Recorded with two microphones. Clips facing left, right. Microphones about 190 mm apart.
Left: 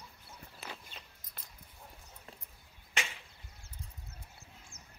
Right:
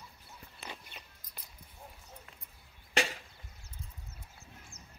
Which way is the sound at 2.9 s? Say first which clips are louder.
Right 8 dB; 40° right (ahead or behind).